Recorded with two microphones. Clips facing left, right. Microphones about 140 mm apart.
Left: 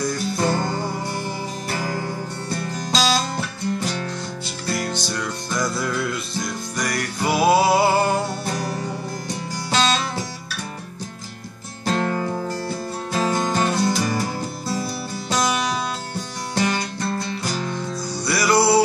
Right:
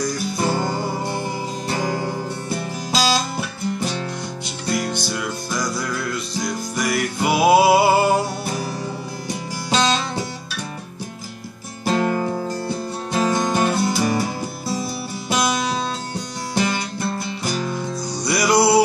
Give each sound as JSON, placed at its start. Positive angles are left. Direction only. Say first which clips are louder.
{"t": 0.4, "sound": "music", "louder": "right 1 dB", "side_deg": -15}
{"t": 2.5, "sound": "guitar", "louder": "even", "side_deg": -10}
{"t": 4.6, "sound": "music", "louder": "right 2 dB", "side_deg": -15}
{"t": 11.8, "sound": "music", "louder": "right 2 dB", "side_deg": -10}
{"t": 15.2, "sound": "music", "louder": "right 1 dB", "side_deg": -15}
{"t": 18.1, "sound": "music", "louder": "right 1 dB", "side_deg": -15}